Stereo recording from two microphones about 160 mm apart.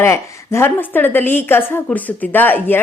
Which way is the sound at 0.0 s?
15° left (ahead or behind).